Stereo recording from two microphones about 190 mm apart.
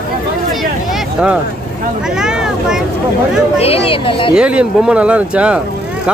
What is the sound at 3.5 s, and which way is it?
Speech, 30° left (ahead or behind).